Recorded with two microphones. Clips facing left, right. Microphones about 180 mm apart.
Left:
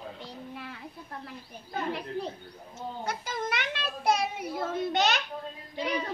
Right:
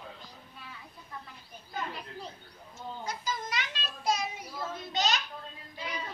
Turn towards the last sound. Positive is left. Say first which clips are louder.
# left 8 dB
turn(degrees=65)  # may be behind; listen again after turning